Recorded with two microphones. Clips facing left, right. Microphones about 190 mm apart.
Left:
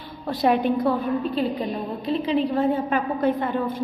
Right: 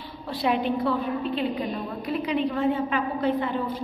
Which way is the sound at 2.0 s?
30° left (ahead or behind).